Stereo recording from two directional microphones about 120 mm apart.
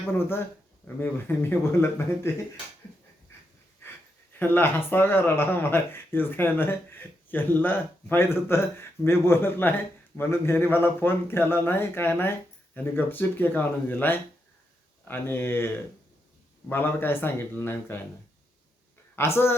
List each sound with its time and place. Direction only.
0.1 s speech: 20° left (ahead or behind)
4.4 s speech: 15° left (ahead or behind)
19.1 s speech: 20° left (ahead or behind)